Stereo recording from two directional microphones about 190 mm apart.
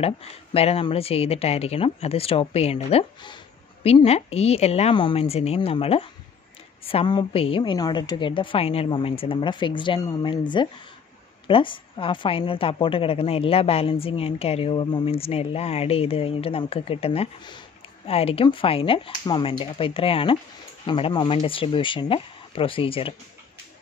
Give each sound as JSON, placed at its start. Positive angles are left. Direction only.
{"t": 0.0, "sound": "a woman's voice", "side_deg": 30}